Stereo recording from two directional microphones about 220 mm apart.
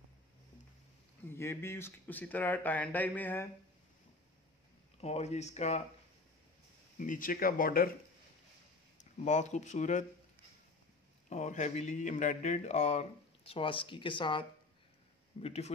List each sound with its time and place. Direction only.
1.2 s speech: 10° left (ahead or behind)
5.0 s speech: 30° left (ahead or behind)
7.0 s speech: 40° left (ahead or behind)
9.2 s speech: 35° left (ahead or behind)
11.2 s speech: 35° left (ahead or behind)
15.4 s speech: 30° left (ahead or behind)